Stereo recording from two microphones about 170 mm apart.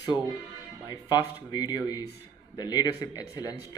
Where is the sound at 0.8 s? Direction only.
25° left (ahead or behind).